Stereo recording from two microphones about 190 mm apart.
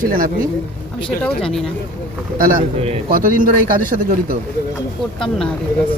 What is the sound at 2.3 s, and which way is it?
Speech, 45° right (ahead or behind).